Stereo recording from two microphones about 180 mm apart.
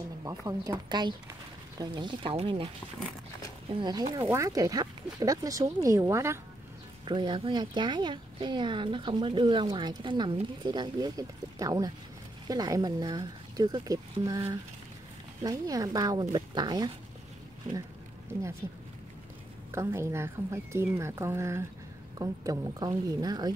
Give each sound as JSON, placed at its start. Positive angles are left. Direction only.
{"t": 0.2, "sound": "a woman's voice", "side_deg": -20}
{"t": 3.7, "sound": "a woman's voice", "side_deg": -25}
{"t": 7.1, "sound": "a woman's voice", "side_deg": -25}
{"t": 15.4, "sound": "a woman's voice", "side_deg": -20}
{"t": 19.7, "sound": "a woman's voice", "side_deg": -15}